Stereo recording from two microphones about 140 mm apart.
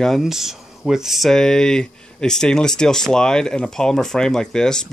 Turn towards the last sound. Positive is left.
turn(degrees=5)  # may be behind; listen again after turning